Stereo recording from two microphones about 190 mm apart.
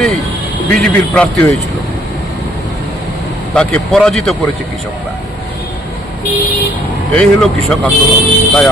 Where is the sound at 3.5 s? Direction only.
5° left (ahead or behind).